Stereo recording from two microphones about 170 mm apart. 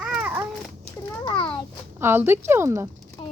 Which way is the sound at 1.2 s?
30° left (ahead or behind).